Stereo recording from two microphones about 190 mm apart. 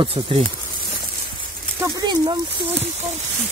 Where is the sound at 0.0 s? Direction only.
30° right (ahead or behind).